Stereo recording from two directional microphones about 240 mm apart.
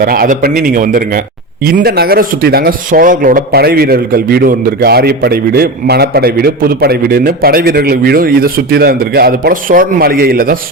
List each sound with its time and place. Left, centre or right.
0.0 s speech: right